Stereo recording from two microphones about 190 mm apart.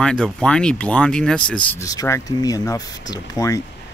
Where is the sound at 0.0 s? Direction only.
5° left (ahead or behind).